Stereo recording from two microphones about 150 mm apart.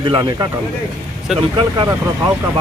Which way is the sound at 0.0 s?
30° right (ahead or behind).